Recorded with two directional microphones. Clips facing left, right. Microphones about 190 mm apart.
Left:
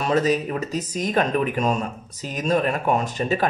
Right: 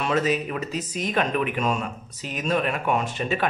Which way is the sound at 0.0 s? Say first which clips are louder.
Left 3 dB; 40° left (ahead or behind).